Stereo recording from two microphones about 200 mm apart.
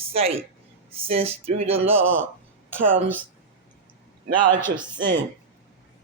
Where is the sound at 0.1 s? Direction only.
30° right (ahead or behind).